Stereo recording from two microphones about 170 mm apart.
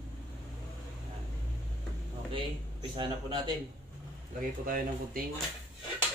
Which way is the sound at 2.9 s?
30° right (ahead or behind).